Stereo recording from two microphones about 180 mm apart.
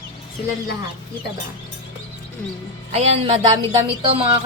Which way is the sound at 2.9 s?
35° right (ahead or behind).